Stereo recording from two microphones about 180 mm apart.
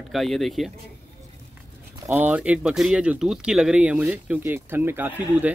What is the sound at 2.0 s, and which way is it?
Speech, 10° right (ahead or behind).